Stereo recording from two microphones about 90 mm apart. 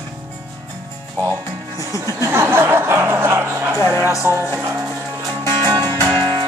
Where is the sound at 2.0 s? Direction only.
30° right (ahead or behind).